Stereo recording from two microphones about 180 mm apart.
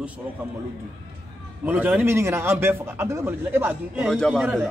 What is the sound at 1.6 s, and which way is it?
A man's voice, 10° right (ahead or behind).